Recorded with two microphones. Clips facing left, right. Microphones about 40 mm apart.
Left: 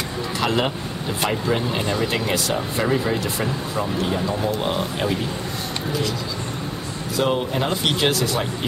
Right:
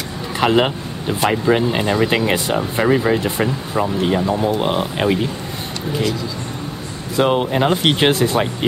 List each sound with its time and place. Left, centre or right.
0.4 s speech: right
7.2 s speech: right